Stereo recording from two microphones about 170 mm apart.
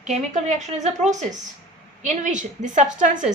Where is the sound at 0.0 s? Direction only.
45° right (ahead or behind).